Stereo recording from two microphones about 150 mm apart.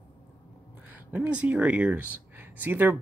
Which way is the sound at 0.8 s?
10° right (ahead or behind).